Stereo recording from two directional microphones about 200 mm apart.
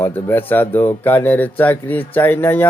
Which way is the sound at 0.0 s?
10° left (ahead or behind).